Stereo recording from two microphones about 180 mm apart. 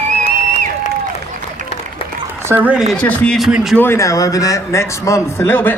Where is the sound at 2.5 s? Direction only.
10° right (ahead or behind).